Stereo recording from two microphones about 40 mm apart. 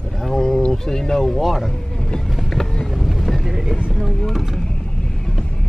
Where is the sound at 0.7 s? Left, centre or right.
Centre.